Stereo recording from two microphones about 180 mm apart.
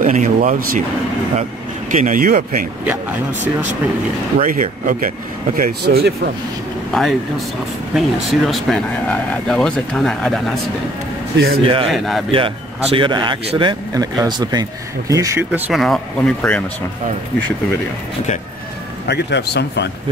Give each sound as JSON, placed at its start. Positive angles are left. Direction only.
{"t": 0.0, "sound": "speech", "side_deg": -45}
{"t": 1.9, "sound": "speech", "side_deg": -45}
{"t": 2.8, "sound": "speech", "side_deg": -10}
{"t": 4.4, "sound": "speech", "side_deg": -50}
{"t": 5.6, "sound": "speech", "side_deg": -60}
{"t": 6.9, "sound": "speech", "side_deg": 0}
{"t": 11.3, "sound": "speech", "side_deg": -60}
{"t": 11.9, "sound": "speech", "side_deg": 0}
{"t": 12.3, "sound": "a man's voice", "side_deg": -30}
{"t": 15.8, "sound": "speech", "side_deg": 5}
{"t": 19.0, "sound": "a man's voice", "side_deg": 65}